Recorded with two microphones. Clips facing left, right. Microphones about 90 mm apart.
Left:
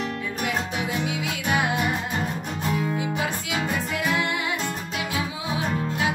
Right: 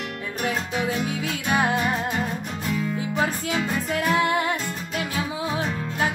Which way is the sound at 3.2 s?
40° right (ahead or behind).